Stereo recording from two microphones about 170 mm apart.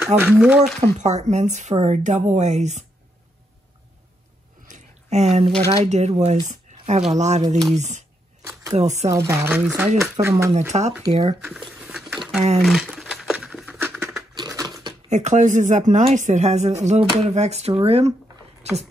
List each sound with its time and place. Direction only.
0.0 s speech: 5° right (ahead or behind)
0.7 s speech: 40° right (ahead or behind)
4.6 s a sound: 45° right (ahead or behind)
5.7 s speech: 40° right (ahead or behind)
8.4 s a sound: 15° right (ahead or behind)
8.7 s speech: 40° right (ahead or behind)
9.1 s speech: 15° right (ahead or behind)
10.7 s speech: 30° right (ahead or behind)
11.4 s a sound: 5° right (ahead or behind)
12.6 s music: centre (ahead or behind)
14.3 s a sound: 20° right (ahead or behind)
15.0 s speech: 40° right (ahead or behind)